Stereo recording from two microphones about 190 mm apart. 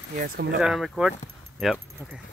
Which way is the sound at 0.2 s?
55° right (ahead or behind).